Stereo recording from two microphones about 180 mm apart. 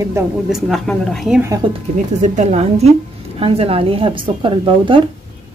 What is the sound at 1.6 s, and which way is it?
A woman's voice, 25° right (ahead or behind).